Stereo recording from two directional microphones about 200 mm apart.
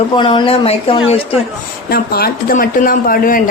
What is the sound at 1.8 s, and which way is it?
Speech, 50° left (ahead or behind).